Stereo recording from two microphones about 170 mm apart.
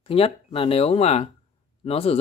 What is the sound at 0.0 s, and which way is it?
Speech, 35° left (ahead or behind).